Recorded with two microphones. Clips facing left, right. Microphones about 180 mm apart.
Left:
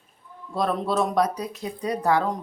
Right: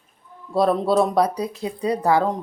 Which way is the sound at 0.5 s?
35° right (ahead or behind).